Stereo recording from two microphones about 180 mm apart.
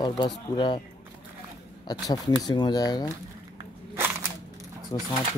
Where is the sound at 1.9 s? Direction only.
20° left (ahead or behind).